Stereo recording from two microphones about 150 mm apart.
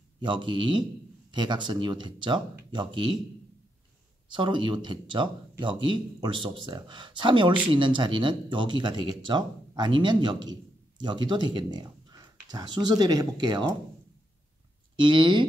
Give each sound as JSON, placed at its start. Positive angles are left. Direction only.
{"t": 0.2, "sound": "speech", "side_deg": -30}
{"t": 4.3, "sound": "speech", "side_deg": -30}
{"t": 15.0, "sound": "speech", "side_deg": -30}